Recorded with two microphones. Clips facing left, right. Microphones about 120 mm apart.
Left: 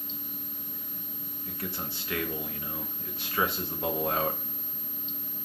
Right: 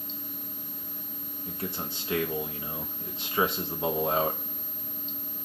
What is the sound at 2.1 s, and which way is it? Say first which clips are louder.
Speech: right 5 dB; 25° right (ahead or behind).